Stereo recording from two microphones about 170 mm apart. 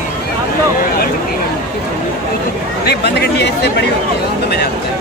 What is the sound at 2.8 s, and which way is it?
Speech, 70° left (ahead or behind).